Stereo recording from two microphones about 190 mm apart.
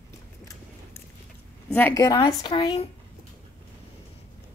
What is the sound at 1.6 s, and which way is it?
Speech, 10° left (ahead or behind).